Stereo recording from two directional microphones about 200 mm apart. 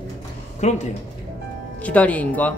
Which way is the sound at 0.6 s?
35° left (ahead or behind).